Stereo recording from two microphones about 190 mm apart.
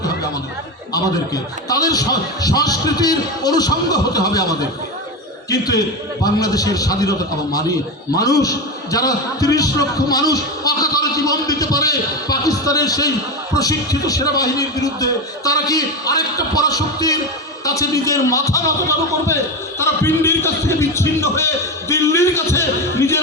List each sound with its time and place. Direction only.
0.9 s a man's voice: 20° left (ahead or behind)